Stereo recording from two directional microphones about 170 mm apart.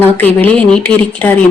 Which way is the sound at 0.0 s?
10° left (ahead or behind).